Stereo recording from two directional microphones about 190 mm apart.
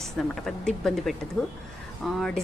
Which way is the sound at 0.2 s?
Centre (ahead or behind).